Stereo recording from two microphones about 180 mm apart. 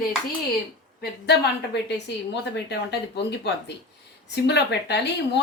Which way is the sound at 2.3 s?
70° left (ahead or behind).